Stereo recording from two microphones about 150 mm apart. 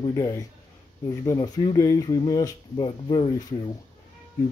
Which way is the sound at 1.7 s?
25° left (ahead or behind).